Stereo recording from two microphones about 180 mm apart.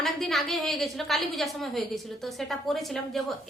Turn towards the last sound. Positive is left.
turn(degrees=0)  # may be behind; listen again after turning